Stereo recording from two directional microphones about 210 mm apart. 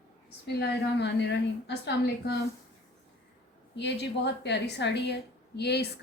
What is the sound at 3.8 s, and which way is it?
A woman's voice, 55° left (ahead or behind).